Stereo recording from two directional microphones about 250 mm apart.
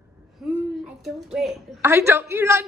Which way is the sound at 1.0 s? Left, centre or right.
Centre.